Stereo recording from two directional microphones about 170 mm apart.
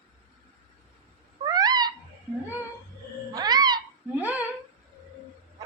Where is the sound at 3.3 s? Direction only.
25° right (ahead or behind).